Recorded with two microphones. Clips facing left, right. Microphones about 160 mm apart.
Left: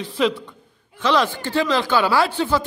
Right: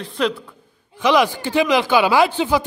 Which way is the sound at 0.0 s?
Centre (ahead or behind).